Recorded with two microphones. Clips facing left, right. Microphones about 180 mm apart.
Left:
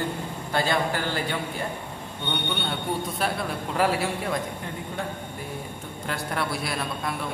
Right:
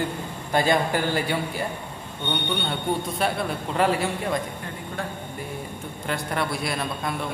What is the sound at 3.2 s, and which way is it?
A man's voice, centre (ahead or behind).